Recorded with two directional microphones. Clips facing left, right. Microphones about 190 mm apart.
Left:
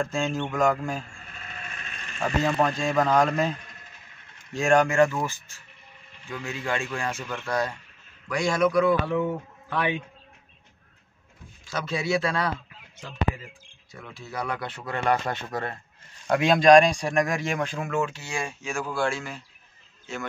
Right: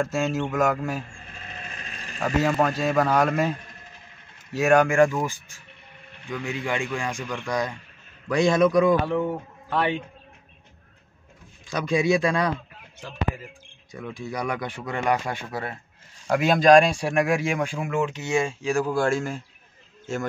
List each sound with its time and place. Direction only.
0.0 s speech: 5° right (ahead or behind)
1.1 s a sound: 35° right (ahead or behind)
2.4 s a man's voice: 5° right (ahead or behind)
11.6 s speech: 15° right (ahead or behind)
13.9 s speech: 15° right (ahead or behind); by 18.9 s 35° right (ahead or behind)
18.9 s speech: 45° right (ahead or behind)